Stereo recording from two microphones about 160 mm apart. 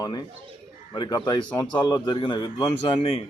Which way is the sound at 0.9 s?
25° left (ahead or behind).